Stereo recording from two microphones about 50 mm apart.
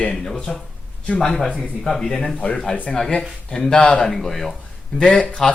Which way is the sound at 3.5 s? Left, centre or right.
Centre.